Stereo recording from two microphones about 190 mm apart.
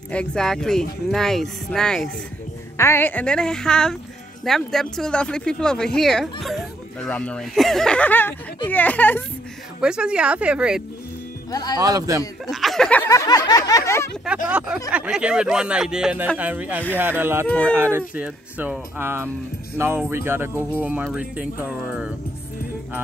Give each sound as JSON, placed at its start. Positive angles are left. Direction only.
{"t": 0.1, "sound": "speech", "side_deg": 5}
{"t": 8.6, "sound": "a sound", "side_deg": 10}
{"t": 9.8, "sound": "speech", "side_deg": -5}
{"t": 11.5, "sound": "speech", "side_deg": 20}
{"t": 11.8, "sound": "a man's voice", "side_deg": -20}
{"t": 12.4, "sound": "speech", "side_deg": 0}
{"t": 13.1, "sound": "a sound", "side_deg": 20}
{"t": 14.2, "sound": "speech", "side_deg": -5}
{"t": 17.5, "sound": "a sound", "side_deg": 5}
{"t": 17.7, "sound": "speech", "side_deg": -10}